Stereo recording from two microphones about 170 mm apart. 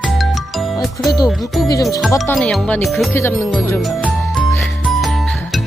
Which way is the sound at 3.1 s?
15° left (ahead or behind).